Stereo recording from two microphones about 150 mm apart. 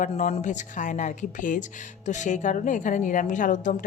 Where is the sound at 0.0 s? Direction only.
50° left (ahead or behind).